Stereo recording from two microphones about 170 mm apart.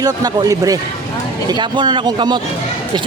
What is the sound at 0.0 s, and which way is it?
Speech, 20° right (ahead or behind).